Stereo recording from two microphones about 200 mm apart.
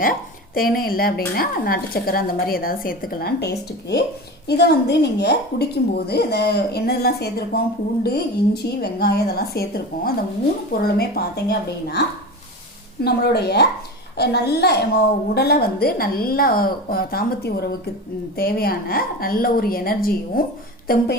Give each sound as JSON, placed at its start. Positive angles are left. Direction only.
{"t": 0.0, "sound": "a woman's voice", "side_deg": 45}